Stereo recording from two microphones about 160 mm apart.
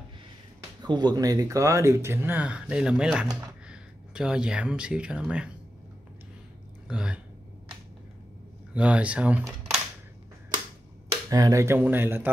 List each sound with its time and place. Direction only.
0.8 s speech: 25° right (ahead or behind); by 5.5 s 5° right (ahead or behind)
6.9 s speech: 5° right (ahead or behind)
8.7 s speech: 5° right (ahead or behind)
11.2 s speech: 20° right (ahead or behind)